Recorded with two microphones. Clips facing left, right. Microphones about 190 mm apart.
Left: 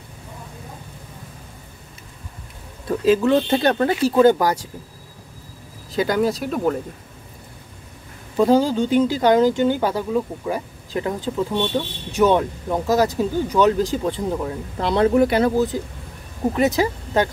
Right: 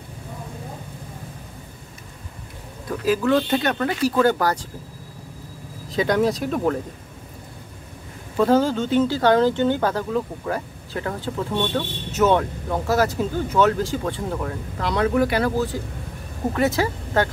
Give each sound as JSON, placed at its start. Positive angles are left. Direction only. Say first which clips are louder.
{"t": 2.9, "sound": "speech", "louder": "left 3 dB", "side_deg": 25}
{"t": 5.9, "sound": "speech", "louder": "even", "side_deg": 0}
{"t": 8.4, "sound": "speech", "louder": "left 2 dB", "side_deg": 15}